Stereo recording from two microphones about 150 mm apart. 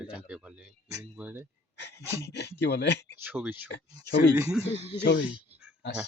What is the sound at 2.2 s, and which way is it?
Speech, 90° left.